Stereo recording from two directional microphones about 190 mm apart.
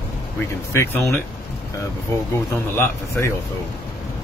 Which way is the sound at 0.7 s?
15° left (ahead or behind).